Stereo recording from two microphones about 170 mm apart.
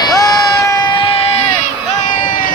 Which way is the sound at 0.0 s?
20° left (ahead or behind).